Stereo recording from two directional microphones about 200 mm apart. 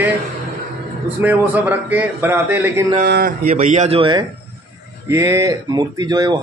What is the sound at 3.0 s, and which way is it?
Speech, 50° right (ahead or behind).